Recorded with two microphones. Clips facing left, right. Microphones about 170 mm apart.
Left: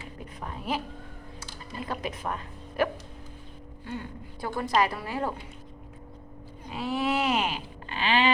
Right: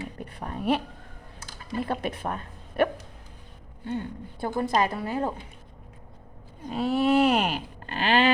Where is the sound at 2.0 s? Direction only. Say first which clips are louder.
Right 3 dB; 60° right (ahead or behind).